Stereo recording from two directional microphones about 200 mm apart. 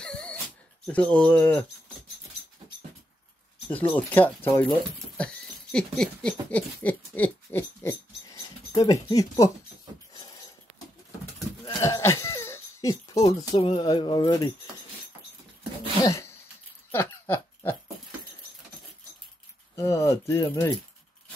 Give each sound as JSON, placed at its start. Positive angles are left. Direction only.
{"t": 0.0, "sound": "dog", "side_deg": 5}
{"t": 0.8, "sound": "speech", "side_deg": 5}
{"t": 3.9, "sound": "speech", "side_deg": 10}
{"t": 4.9, "sound": "patter", "side_deg": 5}
{"t": 6.5, "sound": "owl", "side_deg": 10}
{"t": 10.1, "sound": "a sound", "side_deg": 20}
{"t": 11.6, "sound": "cough", "side_deg": 15}
{"t": 13.3, "sound": "speech", "side_deg": 20}
{"t": 16.0, "sound": "speech", "side_deg": 15}
{"t": 16.9, "sound": "pig", "side_deg": 10}
{"t": 19.7, "sound": "speech", "side_deg": 15}